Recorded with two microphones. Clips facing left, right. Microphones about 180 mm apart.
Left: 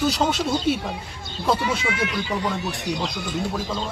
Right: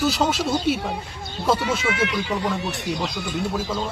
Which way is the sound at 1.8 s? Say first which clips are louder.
Right 2 dB; 70° right (ahead or behind).